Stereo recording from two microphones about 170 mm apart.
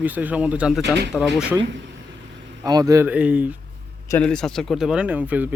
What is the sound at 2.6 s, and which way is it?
Speech, 20° right (ahead or behind).